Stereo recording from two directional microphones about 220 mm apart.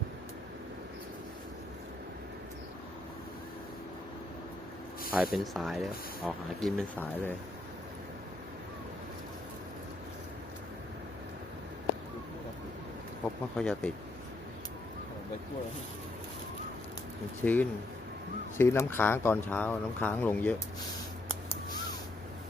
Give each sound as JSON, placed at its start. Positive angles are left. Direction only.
{"t": 5.1, "sound": "speech", "side_deg": 0}
{"t": 13.6, "sound": "speech", "side_deg": 5}
{"t": 17.4, "sound": "speech", "side_deg": 5}